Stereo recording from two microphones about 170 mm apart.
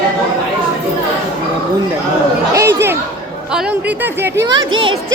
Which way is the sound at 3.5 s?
5° right (ahead or behind).